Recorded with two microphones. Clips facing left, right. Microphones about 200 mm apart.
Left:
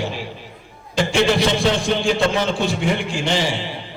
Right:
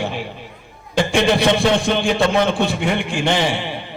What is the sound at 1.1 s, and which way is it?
A man's voice, 60° right (ahead or behind).